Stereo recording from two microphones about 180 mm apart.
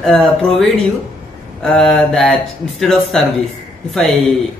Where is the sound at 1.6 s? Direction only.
5° left (ahead or behind).